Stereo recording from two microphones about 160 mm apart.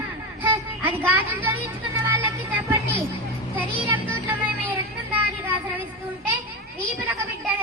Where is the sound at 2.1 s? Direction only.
10° right (ahead or behind).